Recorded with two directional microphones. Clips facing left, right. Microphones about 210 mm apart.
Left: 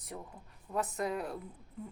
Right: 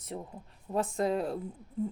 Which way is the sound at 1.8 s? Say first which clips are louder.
Right 12 dB; 30° right (ahead or behind).